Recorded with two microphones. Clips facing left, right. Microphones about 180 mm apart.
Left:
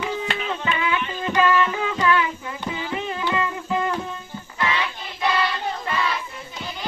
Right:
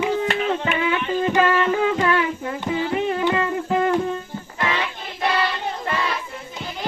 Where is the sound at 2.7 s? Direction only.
50° right (ahead or behind).